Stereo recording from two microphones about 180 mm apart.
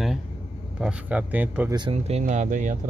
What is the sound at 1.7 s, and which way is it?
Speech, 30° right (ahead or behind).